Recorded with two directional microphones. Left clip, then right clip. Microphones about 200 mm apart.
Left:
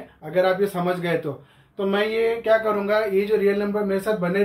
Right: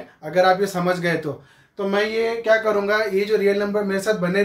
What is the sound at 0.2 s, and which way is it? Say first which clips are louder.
Speech: right 3 dB; 20° right (ahead or behind).